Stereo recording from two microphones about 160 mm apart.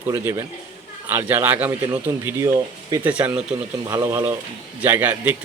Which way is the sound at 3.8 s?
20° right (ahead or behind).